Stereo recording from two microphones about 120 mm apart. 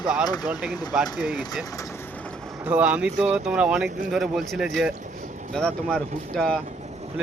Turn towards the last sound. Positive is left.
turn(degrees=5)  # may be behind; listen again after turning